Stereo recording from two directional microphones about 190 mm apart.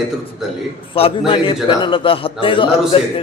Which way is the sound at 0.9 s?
30° left (ahead or behind).